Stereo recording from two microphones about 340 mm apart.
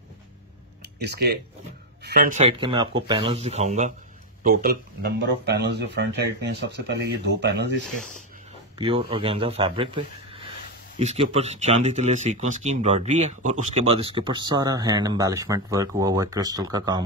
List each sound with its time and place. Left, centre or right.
0.9 s speech: right
8.7 s speech: centre